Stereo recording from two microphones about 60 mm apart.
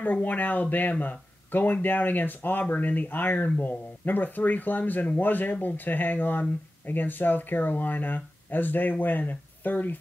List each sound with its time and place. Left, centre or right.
0.0 s speech: left